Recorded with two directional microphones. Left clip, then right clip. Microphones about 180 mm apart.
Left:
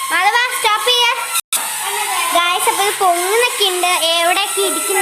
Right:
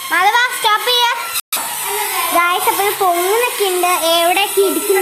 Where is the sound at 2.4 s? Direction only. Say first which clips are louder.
Right 2 dB; centre (ahead or behind).